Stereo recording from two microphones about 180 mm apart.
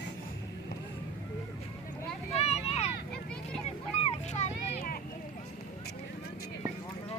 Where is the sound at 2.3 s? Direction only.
35° left (ahead or behind).